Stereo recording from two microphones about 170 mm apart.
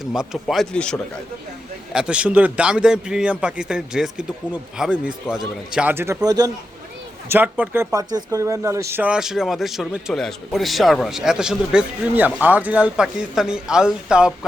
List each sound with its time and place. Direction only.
0.0 s speech: 5° right (ahead or behind); by 6.5 s 20° right (ahead or behind)
7.3 s speech: 10° right (ahead or behind)